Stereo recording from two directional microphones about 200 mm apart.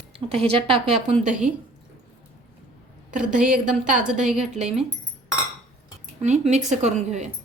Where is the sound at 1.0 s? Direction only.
30° right (ahead or behind).